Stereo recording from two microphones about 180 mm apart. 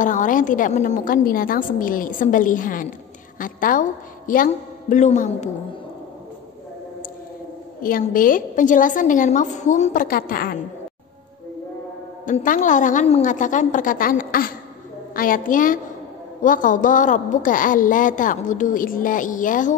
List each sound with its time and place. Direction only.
0.0 s a woman's voice: 45° left (ahead or behind)
7.8 s a woman's voice: 50° left (ahead or behind)
10.0 s a woman's voice: 55° left (ahead or behind)
12.3 s a woman's voice: 45° left (ahead or behind)